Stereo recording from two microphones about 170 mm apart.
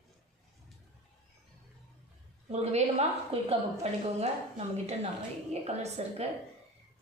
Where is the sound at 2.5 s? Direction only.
40° right (ahead or behind).